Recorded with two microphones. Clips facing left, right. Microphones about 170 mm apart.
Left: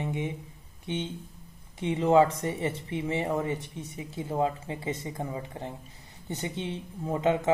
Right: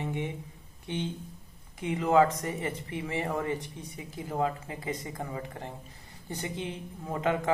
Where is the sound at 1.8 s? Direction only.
25° left (ahead or behind).